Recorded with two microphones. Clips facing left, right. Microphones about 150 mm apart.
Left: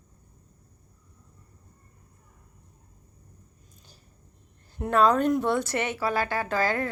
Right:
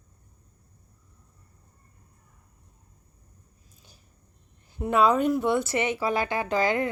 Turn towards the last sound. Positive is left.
turn(degrees=-15)  # may be behind; listen again after turning